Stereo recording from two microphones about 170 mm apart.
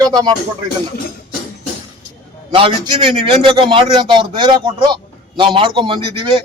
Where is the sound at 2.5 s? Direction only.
30° right (ahead or behind).